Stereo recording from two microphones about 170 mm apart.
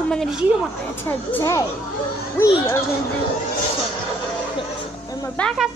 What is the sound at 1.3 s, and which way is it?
A child's voice, 15° left (ahead or behind).